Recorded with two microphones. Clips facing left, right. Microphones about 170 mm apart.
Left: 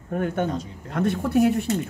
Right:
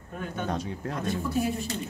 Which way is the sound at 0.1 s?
60° left (ahead or behind).